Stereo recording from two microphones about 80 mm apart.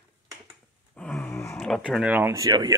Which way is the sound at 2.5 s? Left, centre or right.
Right.